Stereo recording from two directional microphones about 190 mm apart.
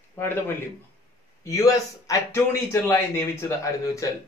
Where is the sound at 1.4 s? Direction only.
15° left (ahead or behind).